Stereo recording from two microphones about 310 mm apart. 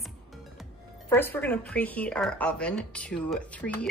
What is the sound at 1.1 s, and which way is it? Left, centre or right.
Speech, centre.